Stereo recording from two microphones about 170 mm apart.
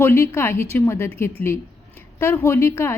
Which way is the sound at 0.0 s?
15° left (ahead or behind).